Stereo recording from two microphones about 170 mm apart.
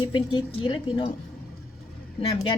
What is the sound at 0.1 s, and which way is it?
A woman's voice, 25° left (ahead or behind).